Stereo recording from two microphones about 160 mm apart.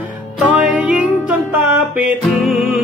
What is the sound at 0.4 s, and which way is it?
Music, 5° right (ahead or behind).